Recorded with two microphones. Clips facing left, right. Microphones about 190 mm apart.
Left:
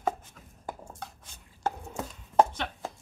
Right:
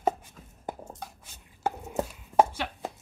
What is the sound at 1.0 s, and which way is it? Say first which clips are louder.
Chopping: right 1 dB; 10° right (ahead or behind).